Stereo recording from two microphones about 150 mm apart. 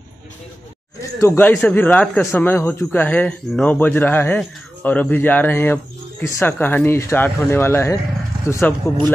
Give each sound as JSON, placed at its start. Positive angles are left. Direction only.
{"t": 1.2, "sound": "a man's voice", "side_deg": 15}